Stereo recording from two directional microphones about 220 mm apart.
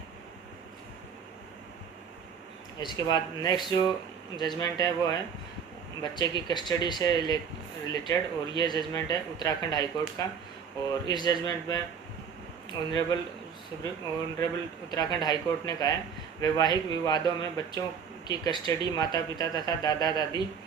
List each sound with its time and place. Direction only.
2.7 s speech: 20° left (ahead or behind)
11.1 s speech: 20° left (ahead or behind)
14.3 s speech: 15° left (ahead or behind)